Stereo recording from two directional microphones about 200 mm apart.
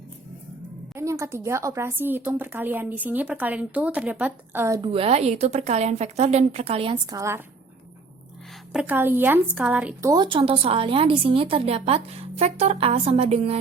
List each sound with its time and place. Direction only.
0.9 s a woman's voice: 15° right (ahead or behind)
4.9 s a woman's voice: 30° right (ahead or behind)
8.7 s a woman's voice: 5° right (ahead or behind); by 13.6 s 30° right (ahead or behind)